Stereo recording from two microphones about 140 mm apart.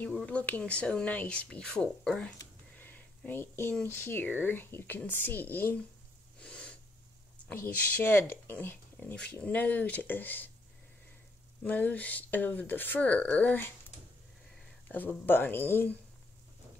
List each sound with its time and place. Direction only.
0.0 s speech: 10° left (ahead or behind)
2.3 s a sound: 15° left (ahead or behind)
3.8 s speech: 15° left (ahead or behind)
6.4 s gasp: 10° left (ahead or behind)
7.5 s speech: 15° left (ahead or behind)
11.6 s speech: 10° left (ahead or behind)
14.9 s speech: 15° left (ahead or behind)